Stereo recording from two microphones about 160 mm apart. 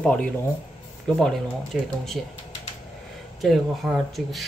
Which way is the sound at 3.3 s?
Centre (ahead or behind).